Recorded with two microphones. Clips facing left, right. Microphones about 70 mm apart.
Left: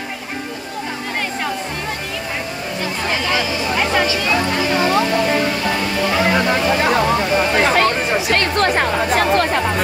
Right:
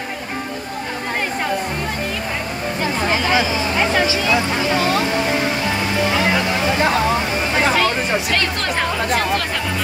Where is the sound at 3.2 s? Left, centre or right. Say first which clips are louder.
Right 1 dB; right.